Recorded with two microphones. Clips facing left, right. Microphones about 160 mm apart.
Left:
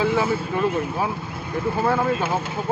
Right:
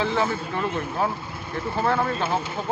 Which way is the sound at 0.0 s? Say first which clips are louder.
Left 3 dB; 10° left (ahead or behind).